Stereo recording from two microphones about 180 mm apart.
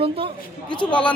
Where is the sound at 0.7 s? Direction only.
25° left (ahead or behind).